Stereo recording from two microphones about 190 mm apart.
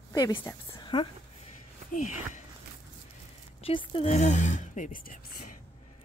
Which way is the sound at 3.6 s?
30° left (ahead or behind).